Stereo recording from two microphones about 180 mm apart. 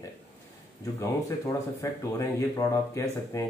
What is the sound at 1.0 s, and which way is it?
Speech, 20° left (ahead or behind).